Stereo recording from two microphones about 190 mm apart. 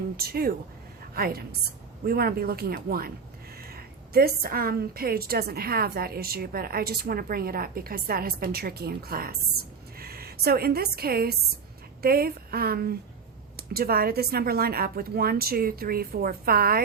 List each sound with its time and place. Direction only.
0.2 s a woman's voice: 55° right (ahead or behind)